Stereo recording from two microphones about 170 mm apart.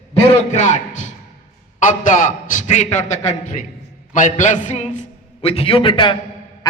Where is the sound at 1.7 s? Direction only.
50° left (ahead or behind).